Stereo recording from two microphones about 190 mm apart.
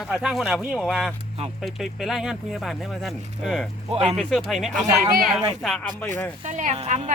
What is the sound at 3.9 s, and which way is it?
Speech, 35° right (ahead or behind).